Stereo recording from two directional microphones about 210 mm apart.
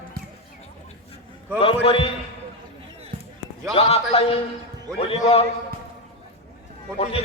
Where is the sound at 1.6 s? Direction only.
25° left (ahead or behind).